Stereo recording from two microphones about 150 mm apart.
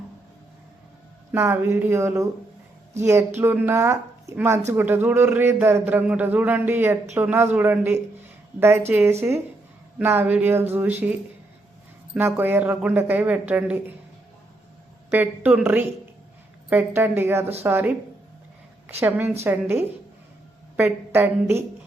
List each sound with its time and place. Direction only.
1.3 s a woman's voice: 15° right (ahead or behind)
12.1 s a woman's voice: 15° right (ahead or behind)
15.1 s a woman's voice: 10° right (ahead or behind)